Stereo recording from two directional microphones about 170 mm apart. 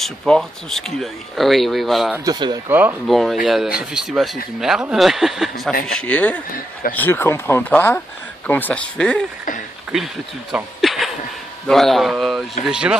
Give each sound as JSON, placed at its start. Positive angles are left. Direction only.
{"t": 0.0, "sound": "speech", "side_deg": 0}
{"t": 2.1, "sound": "speech", "side_deg": -20}
{"t": 2.7, "sound": "speech", "side_deg": -10}
{"t": 3.1, "sound": "speech", "side_deg": 0}
{"t": 10.5, "sound": "speech", "side_deg": 0}